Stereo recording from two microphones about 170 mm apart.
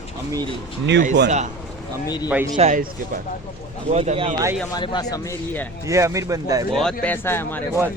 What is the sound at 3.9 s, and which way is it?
Speech, 40° right (ahead or behind).